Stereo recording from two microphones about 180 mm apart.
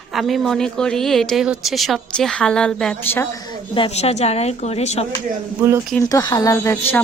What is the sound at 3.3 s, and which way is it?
A woman's voice, 25° left (ahead or behind).